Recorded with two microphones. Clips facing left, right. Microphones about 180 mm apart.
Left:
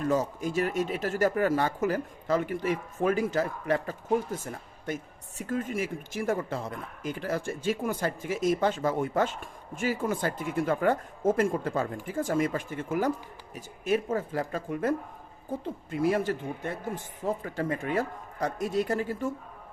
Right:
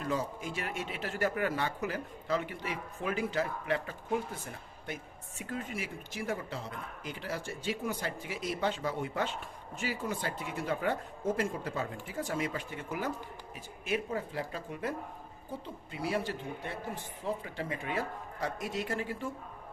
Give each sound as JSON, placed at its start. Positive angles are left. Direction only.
{"t": 0.0, "sound": "speech", "side_deg": 45}